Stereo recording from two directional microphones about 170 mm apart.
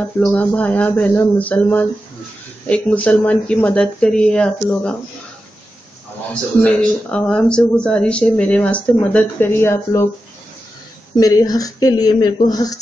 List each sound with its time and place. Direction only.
0.2 s speech: 5° left (ahead or behind)
6.6 s speech: 5° left (ahead or behind)
11.1 s speech: 20° left (ahead or behind)